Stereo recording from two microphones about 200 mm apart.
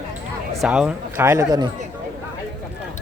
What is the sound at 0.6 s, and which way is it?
Speech, 5° right (ahead or behind).